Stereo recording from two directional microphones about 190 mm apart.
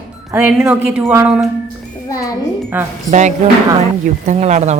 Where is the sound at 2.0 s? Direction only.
20° left (ahead or behind).